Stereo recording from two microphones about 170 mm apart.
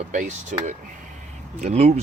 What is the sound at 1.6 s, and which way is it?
Speech, 40° right (ahead or behind).